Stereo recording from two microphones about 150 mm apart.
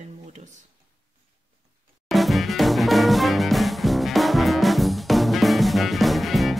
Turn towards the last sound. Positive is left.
turn(degrees=0)  # may be behind; listen again after turning